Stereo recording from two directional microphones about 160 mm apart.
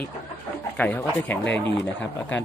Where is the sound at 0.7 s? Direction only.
10° left (ahead or behind).